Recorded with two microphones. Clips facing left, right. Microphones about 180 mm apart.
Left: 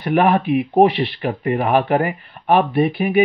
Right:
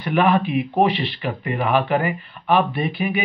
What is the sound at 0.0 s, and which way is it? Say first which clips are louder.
Speech: left 2 dB; 50° left (ahead or behind).